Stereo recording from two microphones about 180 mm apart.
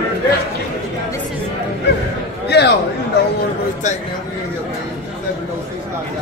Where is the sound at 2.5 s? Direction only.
65° left (ahead or behind).